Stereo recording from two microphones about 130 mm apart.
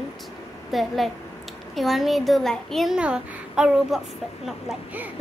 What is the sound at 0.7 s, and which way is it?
A woman's voice, centre (ahead or behind).